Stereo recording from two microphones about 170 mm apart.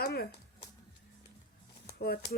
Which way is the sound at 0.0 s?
65° left (ahead or behind).